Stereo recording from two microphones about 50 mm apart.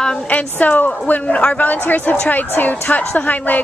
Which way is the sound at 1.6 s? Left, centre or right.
Left.